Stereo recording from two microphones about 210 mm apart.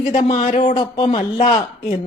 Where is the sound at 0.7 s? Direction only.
20° left (ahead or behind).